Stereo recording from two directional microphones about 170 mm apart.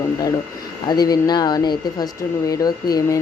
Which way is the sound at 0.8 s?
25° left (ahead or behind).